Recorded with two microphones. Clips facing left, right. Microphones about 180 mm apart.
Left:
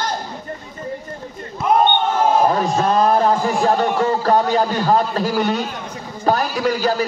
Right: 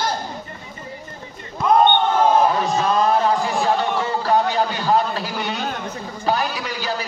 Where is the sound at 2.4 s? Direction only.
45° left (ahead or behind).